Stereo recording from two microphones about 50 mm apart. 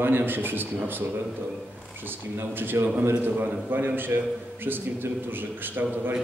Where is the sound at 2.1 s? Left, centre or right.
Right.